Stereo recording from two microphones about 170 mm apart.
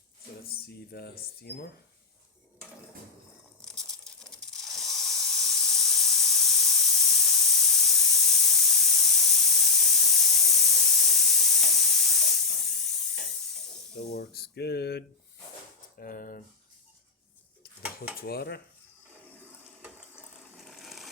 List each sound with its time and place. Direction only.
0.4 s speech: 65° left (ahead or behind)
1.4 s dishes: 75° left (ahead or behind)
3.6 s snake: 5° left (ahead or behind)
13.9 s speech: 75° left (ahead or behind)
16.0 s a sound: 55° left (ahead or behind)
18.2 s dishes: 65° left (ahead or behind)
19.8 s water: 5° right (ahead or behind)